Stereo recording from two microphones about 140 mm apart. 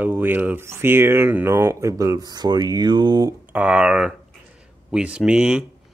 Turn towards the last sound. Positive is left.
turn(degrees=-5)  # may be behind; listen again after turning